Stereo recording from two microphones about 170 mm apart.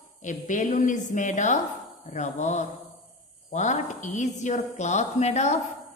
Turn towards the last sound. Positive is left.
turn(degrees=40)  # may be behind; listen again after turning